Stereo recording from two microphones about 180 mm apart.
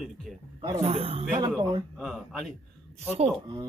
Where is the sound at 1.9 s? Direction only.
5° left (ahead or behind).